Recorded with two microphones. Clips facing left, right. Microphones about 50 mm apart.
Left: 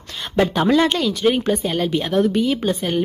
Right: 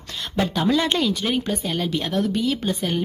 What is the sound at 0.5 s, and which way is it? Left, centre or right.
Speech, left.